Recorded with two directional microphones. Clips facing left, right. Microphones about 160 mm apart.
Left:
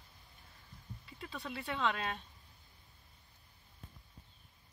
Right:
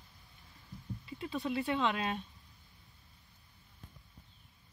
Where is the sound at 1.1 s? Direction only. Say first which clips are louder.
Right 7 dB; 5° right (ahead or behind).